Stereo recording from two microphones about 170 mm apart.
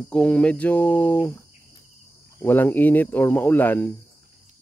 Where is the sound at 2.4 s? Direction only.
10° left (ahead or behind).